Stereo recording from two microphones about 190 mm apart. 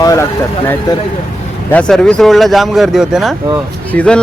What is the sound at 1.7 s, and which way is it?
Speech, 5° left (ahead or behind).